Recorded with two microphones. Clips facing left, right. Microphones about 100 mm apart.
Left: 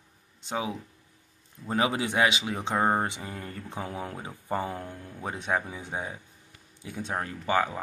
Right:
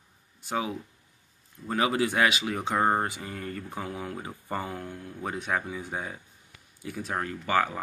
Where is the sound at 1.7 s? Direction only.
25° left (ahead or behind).